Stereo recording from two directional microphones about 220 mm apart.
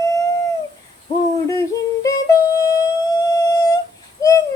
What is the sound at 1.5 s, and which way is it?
Yodeling, 15° left (ahead or behind).